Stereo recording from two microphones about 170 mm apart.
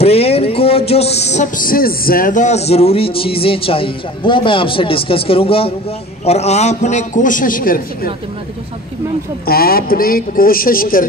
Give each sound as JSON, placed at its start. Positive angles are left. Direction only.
{"t": 0.0, "sound": "a man's voice", "side_deg": 35}
{"t": 9.5, "sound": "speech", "side_deg": 65}